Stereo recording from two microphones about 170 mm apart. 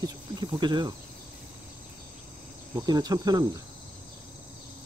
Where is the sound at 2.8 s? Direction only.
25° right (ahead or behind).